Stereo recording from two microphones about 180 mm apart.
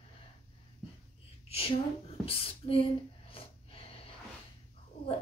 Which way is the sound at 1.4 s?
35° left (ahead or behind).